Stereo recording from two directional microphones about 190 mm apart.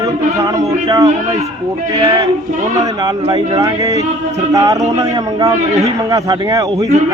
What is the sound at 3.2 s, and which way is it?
A man's voice, 20° right (ahead or behind).